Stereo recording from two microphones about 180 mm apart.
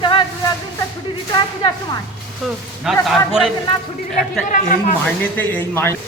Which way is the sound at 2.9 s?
Centre (ahead or behind).